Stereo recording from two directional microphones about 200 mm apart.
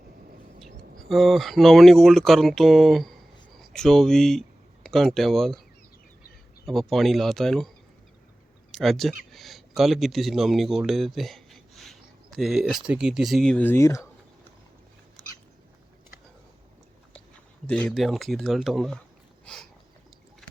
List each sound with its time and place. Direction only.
1.0 s speech: centre (ahead or behind)
6.7 s speech: centre (ahead or behind)
8.7 s speech: centre (ahead or behind)
17.7 s speech: 5° left (ahead or behind)